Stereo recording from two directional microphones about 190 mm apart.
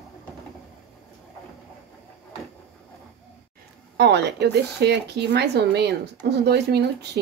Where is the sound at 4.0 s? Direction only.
65° right (ahead or behind).